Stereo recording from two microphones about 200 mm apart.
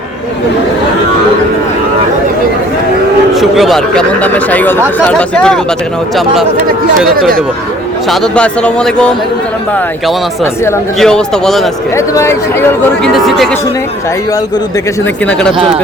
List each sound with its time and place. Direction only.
3.3 s a man's voice: centre (ahead or behind)
8.1 s a man's voice: 5° left (ahead or behind)
11.0 s a man's voice: centre (ahead or behind)
11.9 s speech: 15° left (ahead or behind)
13.1 s a man's voice: centre (ahead or behind)
15.5 s speech: 25° right (ahead or behind)